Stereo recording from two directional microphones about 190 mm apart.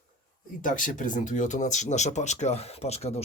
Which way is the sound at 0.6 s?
45° left (ahead or behind).